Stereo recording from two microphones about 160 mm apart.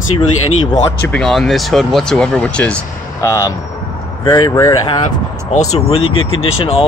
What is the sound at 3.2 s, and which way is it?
Speech, 20° left (ahead or behind).